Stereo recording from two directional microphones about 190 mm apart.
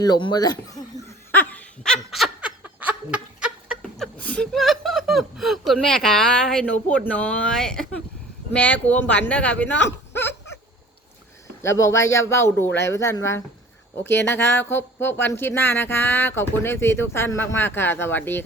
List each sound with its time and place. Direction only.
0.0 s speech: 25° left (ahead or behind)
1.3 s snicker: 10° left (ahead or behind); by 3.5 s 5° right (ahead or behind)
3.9 s speech: 5° left (ahead or behind)
11.6 s speech: 15° left (ahead or behind)